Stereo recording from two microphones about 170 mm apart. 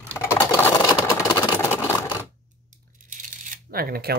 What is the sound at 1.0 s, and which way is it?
Vehicle, 20° left (ahead or behind).